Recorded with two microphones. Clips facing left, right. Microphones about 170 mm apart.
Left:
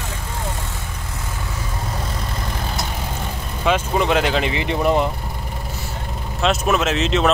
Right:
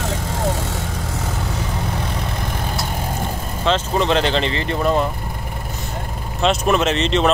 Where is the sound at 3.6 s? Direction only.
10° left (ahead or behind).